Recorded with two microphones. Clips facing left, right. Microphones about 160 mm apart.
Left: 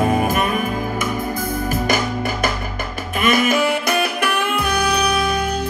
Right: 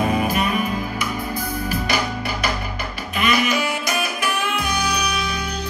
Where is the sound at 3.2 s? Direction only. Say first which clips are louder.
Left 4 dB; 50° left (ahead or behind).